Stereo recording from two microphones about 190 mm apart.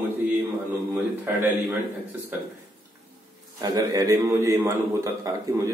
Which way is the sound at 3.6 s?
20° right (ahead or behind).